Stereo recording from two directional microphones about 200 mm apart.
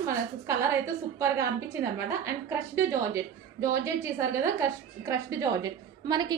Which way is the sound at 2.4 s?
15° right (ahead or behind).